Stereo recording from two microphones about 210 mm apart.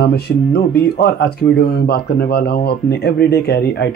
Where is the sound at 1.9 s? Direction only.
50° left (ahead or behind).